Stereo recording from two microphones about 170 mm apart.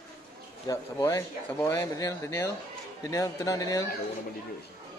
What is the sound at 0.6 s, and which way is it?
Speech, 20° left (ahead or behind).